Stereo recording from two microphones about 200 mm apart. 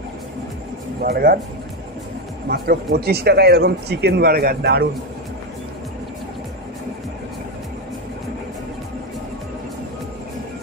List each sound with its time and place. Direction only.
1.0 s speech: 50° right (ahead or behind)
2.5 s speech: 50° right (ahead or behind)